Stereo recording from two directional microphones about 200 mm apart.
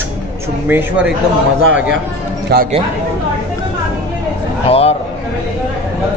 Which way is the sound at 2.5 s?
50° right (ahead or behind).